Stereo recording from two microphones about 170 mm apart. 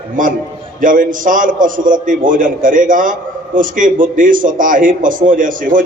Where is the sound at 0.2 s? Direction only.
50° right (ahead or behind).